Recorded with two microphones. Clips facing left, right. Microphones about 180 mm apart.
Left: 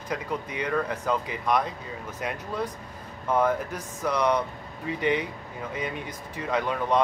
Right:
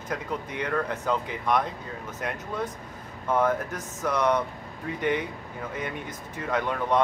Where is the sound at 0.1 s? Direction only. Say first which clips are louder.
Left 1 dB; 10° left (ahead or behind).